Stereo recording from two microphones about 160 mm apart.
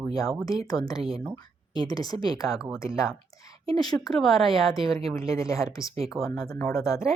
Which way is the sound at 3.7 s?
25° left (ahead or behind).